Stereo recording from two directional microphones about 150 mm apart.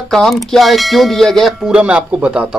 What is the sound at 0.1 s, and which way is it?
Speech, centre (ahead or behind).